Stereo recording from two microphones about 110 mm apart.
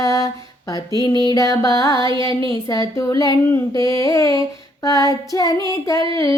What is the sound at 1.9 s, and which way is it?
Music, 45° right (ahead or behind).